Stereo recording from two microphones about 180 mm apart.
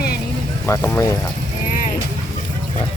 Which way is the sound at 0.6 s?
15° left (ahead or behind).